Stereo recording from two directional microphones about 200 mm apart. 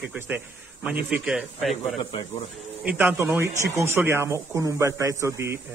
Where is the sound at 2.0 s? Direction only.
25° left (ahead or behind).